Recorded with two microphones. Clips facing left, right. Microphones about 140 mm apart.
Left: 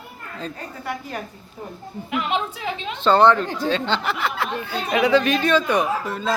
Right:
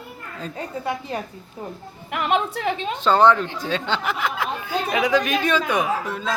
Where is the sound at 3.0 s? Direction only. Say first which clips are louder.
Left 1 dB; 10° right (ahead or behind).